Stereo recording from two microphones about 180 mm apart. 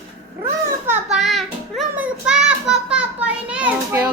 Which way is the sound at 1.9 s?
10° right (ahead or behind).